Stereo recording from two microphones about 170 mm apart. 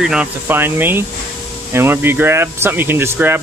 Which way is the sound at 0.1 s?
10° right (ahead or behind).